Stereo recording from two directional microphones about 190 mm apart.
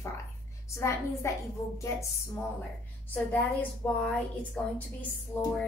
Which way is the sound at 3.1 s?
10° left (ahead or behind).